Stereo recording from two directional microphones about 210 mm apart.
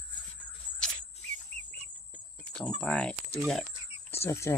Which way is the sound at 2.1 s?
5° left (ahead or behind).